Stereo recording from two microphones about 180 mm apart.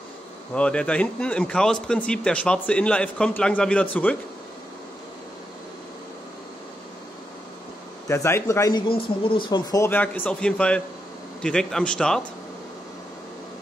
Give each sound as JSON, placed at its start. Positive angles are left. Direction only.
{"t": 0.6, "sound": "a man's voice", "side_deg": 5}
{"t": 8.1, "sound": "a man's voice", "side_deg": 15}